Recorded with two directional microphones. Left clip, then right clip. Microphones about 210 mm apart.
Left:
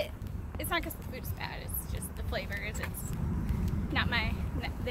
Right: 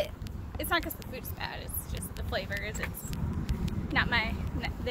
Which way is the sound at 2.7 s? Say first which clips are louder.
Right 2 dB; 20° right (ahead or behind).